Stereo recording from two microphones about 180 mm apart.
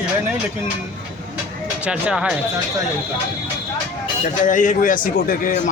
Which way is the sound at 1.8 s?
5° right (ahead or behind).